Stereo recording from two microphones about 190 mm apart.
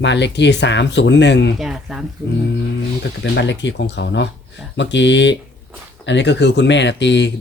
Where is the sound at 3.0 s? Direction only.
65° left (ahead or behind).